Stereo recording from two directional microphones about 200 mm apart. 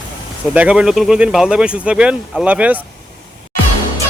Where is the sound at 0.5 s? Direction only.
5° right (ahead or behind).